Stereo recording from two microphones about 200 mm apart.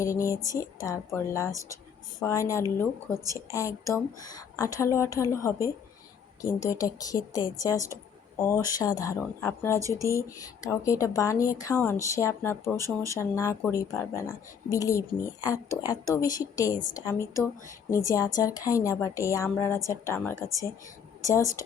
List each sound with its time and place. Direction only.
0.0 s a woman's voice: 15° left (ahead or behind)
12.8 s speech: 15° right (ahead or behind)
13.1 s a woman's voice: 15° left (ahead or behind)